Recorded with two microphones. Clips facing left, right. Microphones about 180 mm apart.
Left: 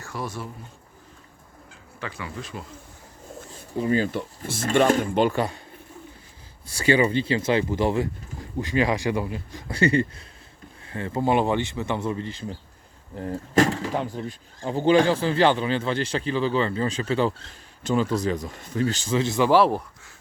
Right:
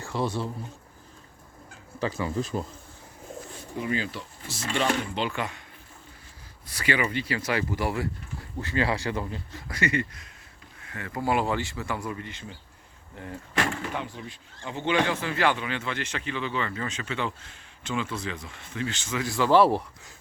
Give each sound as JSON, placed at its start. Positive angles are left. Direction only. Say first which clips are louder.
{"t": 0.1, "sound": "speech", "louder": "right 4 dB", "side_deg": -30}
{"t": 2.0, "sound": "speech", "louder": "right 6 dB", "side_deg": -35}
{"t": 3.8, "sound": "speech", "louder": "left 7 dB", "side_deg": 40}
{"t": 5.4, "sound": "speech", "louder": "left 7 dB", "side_deg": 35}
{"t": 6.7, "sound": "speech", "louder": "left 7 dB", "side_deg": 30}
{"t": 9.6, "sound": "speech", "louder": "left 7 dB", "side_deg": 30}